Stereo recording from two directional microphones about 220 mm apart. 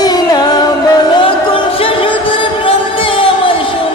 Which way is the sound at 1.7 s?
25° left (ahead or behind).